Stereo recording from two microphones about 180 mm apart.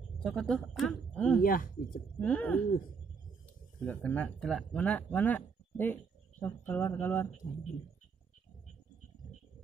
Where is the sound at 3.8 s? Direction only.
10° left (ahead or behind).